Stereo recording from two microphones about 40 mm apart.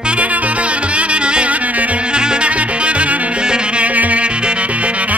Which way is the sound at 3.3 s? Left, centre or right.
Right.